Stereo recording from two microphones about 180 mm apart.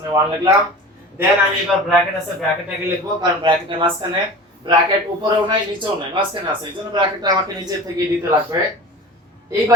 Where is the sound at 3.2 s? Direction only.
25° right (ahead or behind).